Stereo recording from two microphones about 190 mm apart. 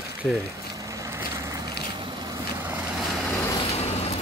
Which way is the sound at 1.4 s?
15° right (ahead or behind).